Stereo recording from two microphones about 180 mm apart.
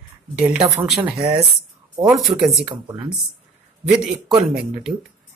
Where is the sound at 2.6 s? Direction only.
25° right (ahead or behind).